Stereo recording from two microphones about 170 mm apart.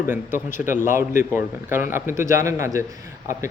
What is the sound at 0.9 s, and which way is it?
Speech, 15° right (ahead or behind).